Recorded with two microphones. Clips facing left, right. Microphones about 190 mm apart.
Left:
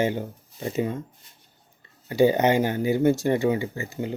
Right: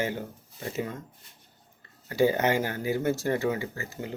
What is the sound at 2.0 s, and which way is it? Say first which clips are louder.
Speech: left 5 dB; 20° left (ahead or behind).